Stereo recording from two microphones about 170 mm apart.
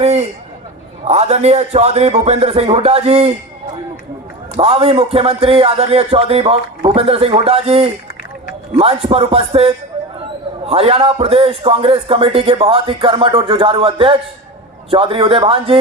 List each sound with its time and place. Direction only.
0.0 s a sound: 40° right (ahead or behind)
1.0 s a man's voice: 40° right (ahead or behind)
4.5 s a man's voice: 35° right (ahead or behind)